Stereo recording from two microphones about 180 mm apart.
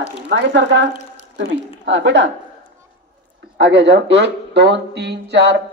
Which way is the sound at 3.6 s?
75° right (ahead or behind).